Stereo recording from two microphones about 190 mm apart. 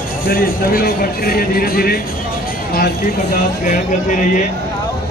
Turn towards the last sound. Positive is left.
turn(degrees=45)  # may be behind; listen again after turning